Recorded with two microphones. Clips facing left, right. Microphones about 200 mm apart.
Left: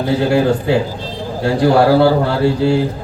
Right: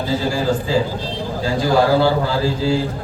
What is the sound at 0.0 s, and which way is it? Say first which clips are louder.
A man's voice: left 6 dB; 65° left (ahead or behind).